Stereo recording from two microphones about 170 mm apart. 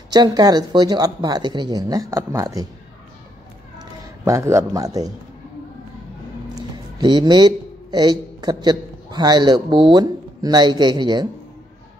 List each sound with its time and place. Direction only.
0.1 s speech: 25° right (ahead or behind)
4.2 s a man's voice: 15° right (ahead or behind)
7.0 s a man's voice: 25° right (ahead or behind)